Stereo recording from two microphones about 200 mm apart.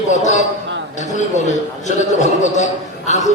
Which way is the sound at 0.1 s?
35° left (ahead or behind).